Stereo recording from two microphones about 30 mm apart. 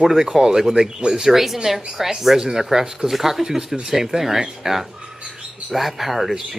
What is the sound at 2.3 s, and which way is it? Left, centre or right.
Speech, right.